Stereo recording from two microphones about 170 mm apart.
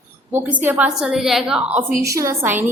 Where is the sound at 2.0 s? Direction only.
20° right (ahead or behind).